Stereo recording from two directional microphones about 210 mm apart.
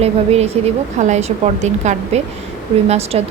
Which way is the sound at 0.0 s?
30° right (ahead or behind).